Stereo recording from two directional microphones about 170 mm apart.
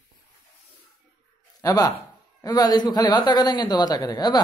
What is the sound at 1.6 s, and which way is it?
A woman's voice, 20° left (ahead or behind).